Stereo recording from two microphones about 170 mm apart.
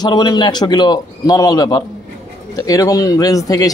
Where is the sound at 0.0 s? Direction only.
25° left (ahead or behind).